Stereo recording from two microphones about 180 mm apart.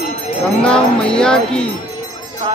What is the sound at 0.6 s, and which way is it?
Speech, 5° left (ahead or behind).